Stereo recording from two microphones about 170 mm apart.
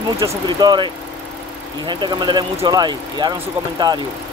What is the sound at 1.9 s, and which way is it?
Speech, 25° right (ahead or behind).